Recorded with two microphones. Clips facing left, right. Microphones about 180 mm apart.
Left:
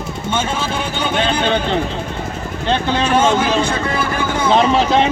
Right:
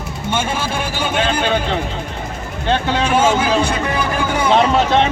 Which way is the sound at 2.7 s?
10° right (ahead or behind).